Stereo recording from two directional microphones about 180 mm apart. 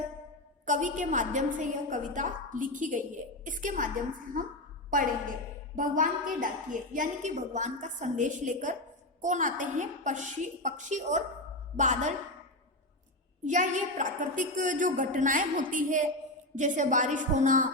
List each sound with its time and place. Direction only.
0.6 s a woman's voice: 45° right (ahead or behind)
4.9 s a woman's voice: 50° right (ahead or behind)
13.4 s a woman's voice: 45° right (ahead or behind)